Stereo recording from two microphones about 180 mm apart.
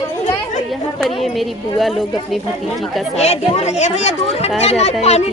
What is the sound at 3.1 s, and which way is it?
Speech, 35° left (ahead or behind).